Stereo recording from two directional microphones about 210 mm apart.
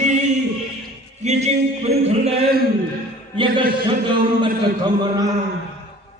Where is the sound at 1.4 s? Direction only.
30° right (ahead or behind).